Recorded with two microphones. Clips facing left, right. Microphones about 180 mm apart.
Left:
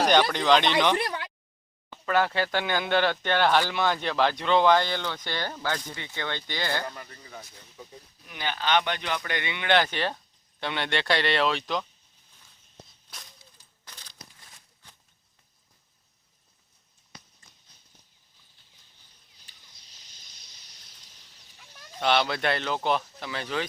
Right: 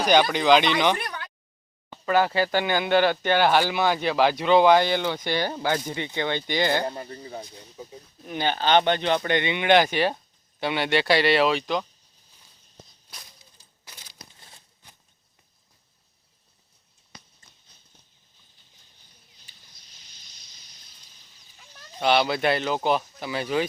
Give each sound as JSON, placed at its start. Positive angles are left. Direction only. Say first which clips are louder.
{"t": 0.1, "sound": "speech", "louder": "right 7 dB", "side_deg": -5}
{"t": 0.9, "sound": "a sound", "louder": "left 5 dB", "side_deg": 30}
{"t": 2.0, "sound": "speech", "louder": "right 3 dB", "side_deg": -5}
{"t": 6.8, "sound": "speech", "louder": "right 7 dB", "side_deg": -30}
{"t": 13.8, "sound": "crumpling", "louder": "right 1 dB", "side_deg": -10}
{"t": 14.3, "sound": "crumpling", "louder": "right 3 dB", "side_deg": -30}
{"t": 20.0, "sound": "a sound", "louder": "even", "side_deg": 50}
{"t": 22.0, "sound": "speech", "louder": "right 3 dB", "side_deg": -5}